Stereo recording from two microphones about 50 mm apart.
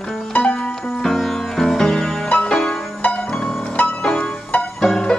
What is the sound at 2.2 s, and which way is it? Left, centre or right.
Music, left.